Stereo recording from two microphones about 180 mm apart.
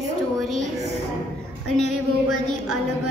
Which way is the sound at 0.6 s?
40° right (ahead or behind).